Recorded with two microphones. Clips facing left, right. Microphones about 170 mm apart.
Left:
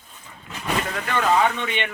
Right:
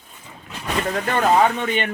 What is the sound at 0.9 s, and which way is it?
Speech, 40° right (ahead or behind).